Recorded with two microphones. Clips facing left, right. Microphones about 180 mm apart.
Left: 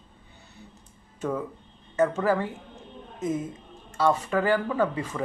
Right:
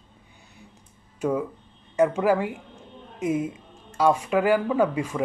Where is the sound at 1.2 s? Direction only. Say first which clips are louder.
Right 4 dB; 10° right (ahead or behind).